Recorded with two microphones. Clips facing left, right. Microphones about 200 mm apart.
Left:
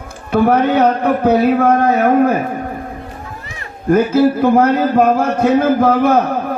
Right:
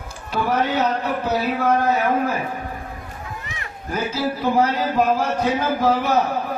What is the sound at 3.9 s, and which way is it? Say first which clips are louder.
Speech: left 12 dB; 50° left (ahead or behind).